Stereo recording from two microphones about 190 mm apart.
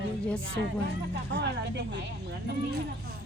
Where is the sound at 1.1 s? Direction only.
65° right (ahead or behind).